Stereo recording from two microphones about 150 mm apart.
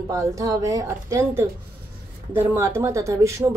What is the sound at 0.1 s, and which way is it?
A woman's voice, 20° right (ahead or behind).